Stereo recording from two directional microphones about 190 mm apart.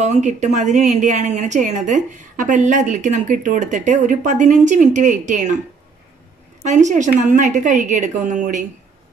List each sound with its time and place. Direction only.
0.0 s a woman's voice: 40° right (ahead or behind)
6.6 s a woman's voice: 40° right (ahead or behind)